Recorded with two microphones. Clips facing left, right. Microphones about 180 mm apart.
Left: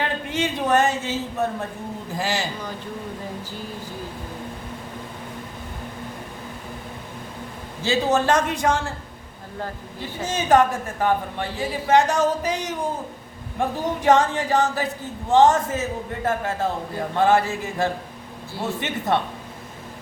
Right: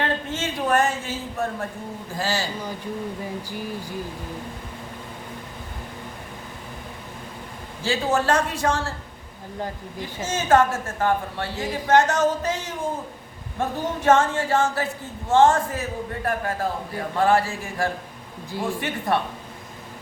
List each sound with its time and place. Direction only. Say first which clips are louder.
0.0 s a woman's voice: left 1 dB; 15° left (ahead or behind)
7.9 s a man's voice: left 2 dB; 20° left (ahead or behind)
10.2 s a woman's voice: left 1 dB; 15° left (ahead or behind)